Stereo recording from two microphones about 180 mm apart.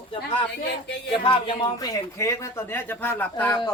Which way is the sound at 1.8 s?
20° left (ahead or behind).